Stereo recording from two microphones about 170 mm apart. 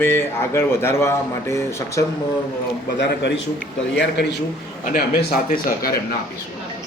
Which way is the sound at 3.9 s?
90° left.